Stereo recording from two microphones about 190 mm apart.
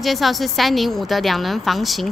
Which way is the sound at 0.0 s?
Centre (ahead or behind).